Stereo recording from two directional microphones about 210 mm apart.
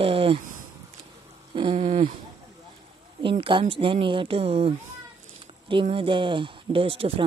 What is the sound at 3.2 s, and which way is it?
Speech, 25° right (ahead or behind).